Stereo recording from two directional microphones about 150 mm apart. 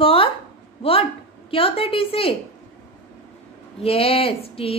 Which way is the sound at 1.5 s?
35° left (ahead or behind).